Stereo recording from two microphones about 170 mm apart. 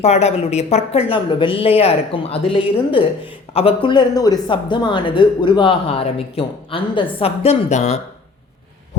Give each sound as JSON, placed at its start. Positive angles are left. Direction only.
{"t": 0.0, "sound": "speech", "side_deg": 40}
{"t": 3.8, "sound": "speech", "side_deg": 25}